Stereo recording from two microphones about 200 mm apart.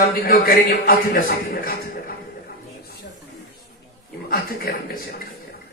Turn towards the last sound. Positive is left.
turn(degrees=50)  # may be behind; listen again after turning